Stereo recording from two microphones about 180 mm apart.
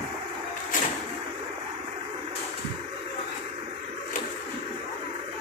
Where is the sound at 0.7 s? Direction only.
45° left (ahead or behind).